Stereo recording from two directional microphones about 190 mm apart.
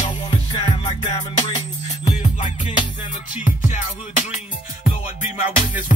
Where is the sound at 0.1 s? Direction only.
25° left (ahead or behind).